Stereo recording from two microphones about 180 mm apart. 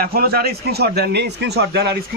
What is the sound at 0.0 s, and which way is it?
A man's voice, 55° right (ahead or behind).